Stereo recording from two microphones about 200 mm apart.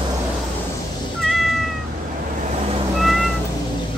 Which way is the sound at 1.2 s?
Centre (ahead or behind).